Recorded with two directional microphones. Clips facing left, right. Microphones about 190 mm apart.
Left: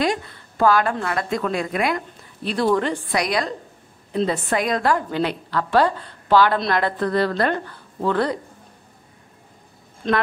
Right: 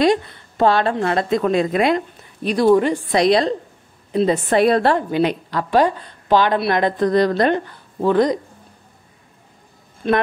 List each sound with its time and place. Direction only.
0.0 s a woman's voice: 25° right (ahead or behind)
3.1 s a woman's voice: 25° right (ahead or behind)
5.1 s a woman's voice: 15° right (ahead or behind)
10.0 s a woman's voice: 10° right (ahead or behind)